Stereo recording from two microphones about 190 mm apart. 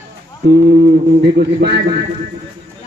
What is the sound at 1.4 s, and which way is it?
Speech, 60° right (ahead or behind).